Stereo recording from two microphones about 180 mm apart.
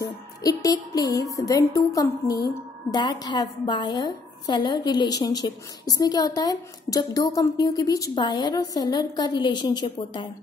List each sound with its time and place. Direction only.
0.0 s music: 20° left (ahead or behind)
1.3 s a woman's voice: 20° left (ahead or behind)